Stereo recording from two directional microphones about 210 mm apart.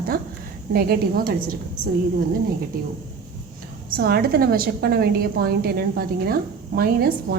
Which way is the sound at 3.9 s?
45° right (ahead or behind).